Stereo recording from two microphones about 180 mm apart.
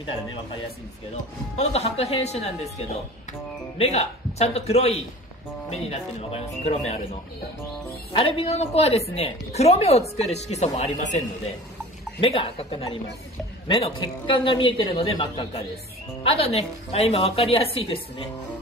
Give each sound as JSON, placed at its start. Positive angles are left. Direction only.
{"t": 1.6, "sound": "a woman's voice", "side_deg": 35}
{"t": 3.7, "sound": "a woman's voice", "side_deg": 35}
{"t": 8.1, "sound": "a woman's voice", "side_deg": 30}
{"t": 12.2, "sound": "a woman's voice", "side_deg": 30}